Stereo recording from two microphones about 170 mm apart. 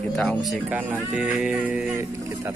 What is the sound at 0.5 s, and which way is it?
Speech, 10° right (ahead or behind).